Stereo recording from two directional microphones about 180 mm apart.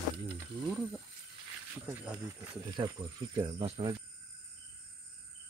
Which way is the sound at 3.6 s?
35° right (ahead or behind).